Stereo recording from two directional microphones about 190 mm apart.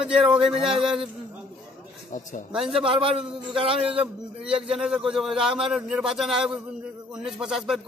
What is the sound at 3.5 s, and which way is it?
Speech, 30° right (ahead or behind).